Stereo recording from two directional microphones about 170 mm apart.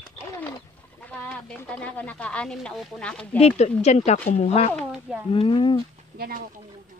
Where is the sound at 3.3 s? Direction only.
40° left (ahead or behind).